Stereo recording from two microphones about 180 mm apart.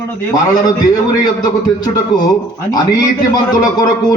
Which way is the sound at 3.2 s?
20° left (ahead or behind).